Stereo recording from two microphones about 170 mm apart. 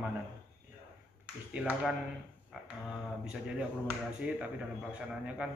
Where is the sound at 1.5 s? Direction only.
5° right (ahead or behind).